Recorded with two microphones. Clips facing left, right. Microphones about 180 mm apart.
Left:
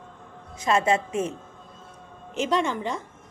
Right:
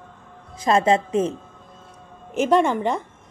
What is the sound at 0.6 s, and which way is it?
Speech, 35° right (ahead or behind).